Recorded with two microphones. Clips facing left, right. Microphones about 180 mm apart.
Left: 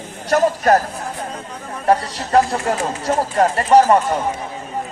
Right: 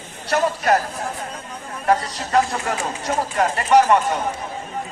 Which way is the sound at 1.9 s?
35° left (ahead or behind).